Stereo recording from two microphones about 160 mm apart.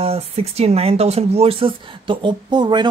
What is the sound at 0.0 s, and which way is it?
Speech, 40° right (ahead or behind).